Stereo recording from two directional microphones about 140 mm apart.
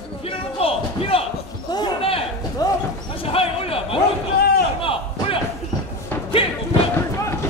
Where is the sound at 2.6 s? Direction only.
25° left (ahead or behind).